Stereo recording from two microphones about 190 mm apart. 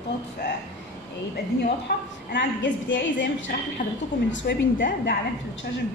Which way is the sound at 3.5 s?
60° left (ahead or behind).